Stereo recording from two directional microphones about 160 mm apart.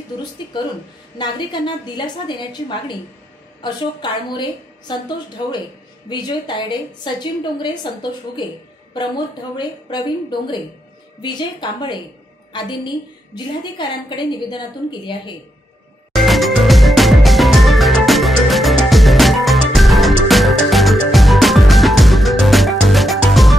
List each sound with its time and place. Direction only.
0.5 s a woman's voice: 30° left (ahead or behind)
9.6 s a woman's voice: 25° left (ahead or behind)
16.2 s music: centre (ahead or behind)